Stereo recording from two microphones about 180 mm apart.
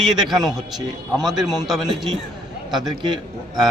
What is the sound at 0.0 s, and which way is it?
A man's voice, centre (ahead or behind).